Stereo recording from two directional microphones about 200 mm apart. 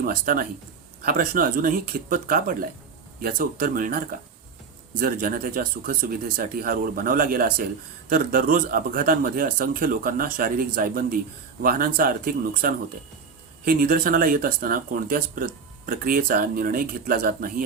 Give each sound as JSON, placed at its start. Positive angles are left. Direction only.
{"t": 0.0, "sound": "speech", "side_deg": -45}